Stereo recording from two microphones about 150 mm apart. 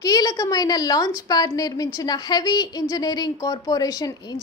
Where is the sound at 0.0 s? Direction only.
25° left (ahead or behind).